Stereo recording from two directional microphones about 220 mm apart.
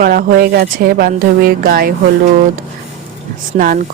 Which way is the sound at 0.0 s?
40° right (ahead or behind).